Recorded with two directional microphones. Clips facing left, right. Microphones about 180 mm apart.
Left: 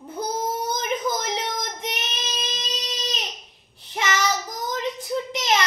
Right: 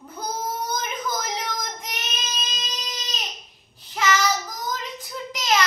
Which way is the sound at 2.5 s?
25° left (ahead or behind).